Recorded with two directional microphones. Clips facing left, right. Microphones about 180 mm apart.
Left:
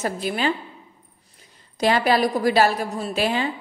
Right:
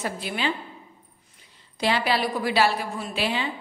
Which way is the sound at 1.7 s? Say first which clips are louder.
Left 5 dB; 45° left (ahead or behind).